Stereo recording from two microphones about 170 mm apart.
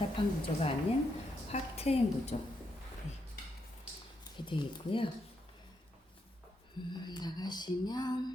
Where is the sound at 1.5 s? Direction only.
35° left (ahead or behind).